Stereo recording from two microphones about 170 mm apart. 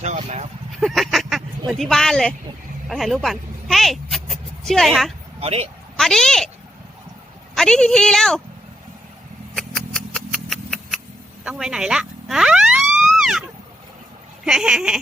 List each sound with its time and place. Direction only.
0.0 s speech: 40° right (ahead or behind)
0.8 s speech: centre (ahead or behind)
5.4 s speech: 35° right (ahead or behind)
6.0 s a woman's voice: centre (ahead or behind)
7.5 s a woman's voice: 5° left (ahead or behind)
9.6 s a sound: centre (ahead or behind)
11.4 s police car: 5° right (ahead or behind)
14.4 s a woman's voice: 5° right (ahead or behind)